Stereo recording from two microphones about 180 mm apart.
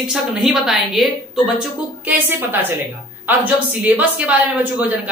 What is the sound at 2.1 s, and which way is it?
A woman's voice, 10° right (ahead or behind).